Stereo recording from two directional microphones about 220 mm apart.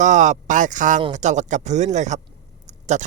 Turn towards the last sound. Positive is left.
turn(degrees=-30)  # may be behind; listen again after turning